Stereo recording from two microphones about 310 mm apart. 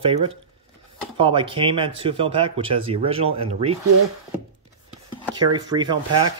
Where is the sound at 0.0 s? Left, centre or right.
Centre.